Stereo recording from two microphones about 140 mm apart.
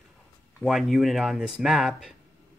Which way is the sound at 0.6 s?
Centre (ahead or behind).